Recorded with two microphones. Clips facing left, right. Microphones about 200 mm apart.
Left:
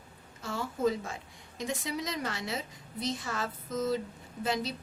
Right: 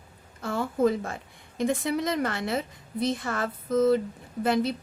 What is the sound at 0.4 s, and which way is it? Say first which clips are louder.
A woman's voice: right 6 dB; 55° right (ahead or behind).